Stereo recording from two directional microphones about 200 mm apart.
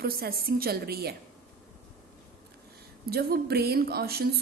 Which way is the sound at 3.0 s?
50° right (ahead or behind).